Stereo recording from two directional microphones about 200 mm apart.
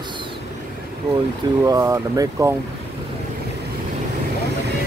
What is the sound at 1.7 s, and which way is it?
Speech, 15° right (ahead or behind).